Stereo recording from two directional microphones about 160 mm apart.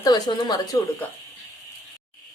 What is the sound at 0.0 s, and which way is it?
Speech, 25° left (ahead or behind).